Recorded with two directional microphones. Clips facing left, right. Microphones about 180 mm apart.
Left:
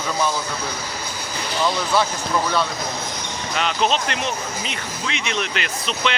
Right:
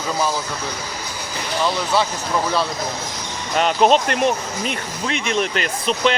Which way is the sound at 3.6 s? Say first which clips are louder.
Right 6 dB; 45° right (ahead or behind).